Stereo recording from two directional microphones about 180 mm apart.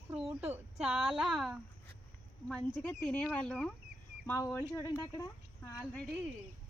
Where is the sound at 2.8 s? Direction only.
5° left (ahead or behind).